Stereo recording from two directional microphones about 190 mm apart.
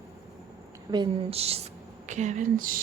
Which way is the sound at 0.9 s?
25° right (ahead or behind).